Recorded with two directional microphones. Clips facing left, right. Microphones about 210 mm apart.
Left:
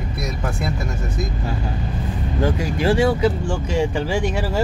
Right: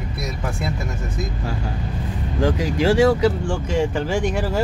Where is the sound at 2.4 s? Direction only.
90° right.